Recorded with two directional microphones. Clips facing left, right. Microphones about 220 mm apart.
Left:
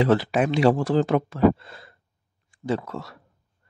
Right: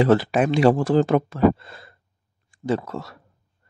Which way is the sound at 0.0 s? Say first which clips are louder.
Right 2 dB; 45° right (ahead or behind).